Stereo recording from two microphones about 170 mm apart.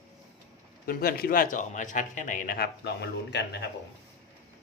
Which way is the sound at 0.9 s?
60° left (ahead or behind).